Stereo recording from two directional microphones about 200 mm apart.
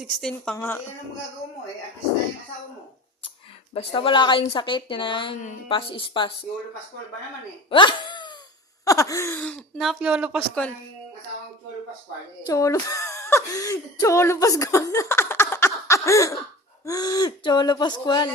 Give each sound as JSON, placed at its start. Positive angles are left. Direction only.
{"t": 0.0, "sound": "a woman's voice", "side_deg": 0}
{"t": 3.8, "sound": "speech", "side_deg": 25}
{"t": 7.7, "sound": "speech", "side_deg": 25}
{"t": 10.5, "sound": "a woman's voice", "side_deg": 5}
{"t": 12.4, "sound": "speech", "side_deg": 15}